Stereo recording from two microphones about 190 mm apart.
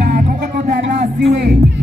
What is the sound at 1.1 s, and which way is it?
Music, 60° right (ahead or behind).